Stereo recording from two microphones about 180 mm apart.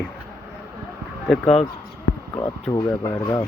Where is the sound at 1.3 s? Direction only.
5° left (ahead or behind).